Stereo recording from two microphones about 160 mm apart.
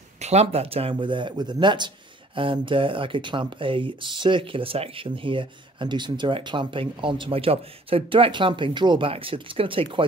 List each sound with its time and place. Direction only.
0.2 s speech: 40° right (ahead or behind)